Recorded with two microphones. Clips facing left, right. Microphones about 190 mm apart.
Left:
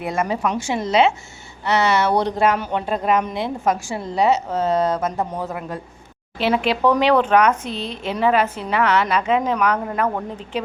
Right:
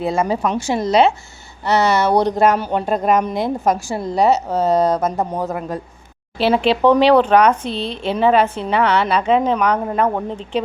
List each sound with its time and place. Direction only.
0.0 s speech: 30° right (ahead or behind)
6.4 s speech: 30° right (ahead or behind)